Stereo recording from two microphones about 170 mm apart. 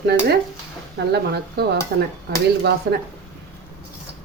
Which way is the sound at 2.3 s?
90° right.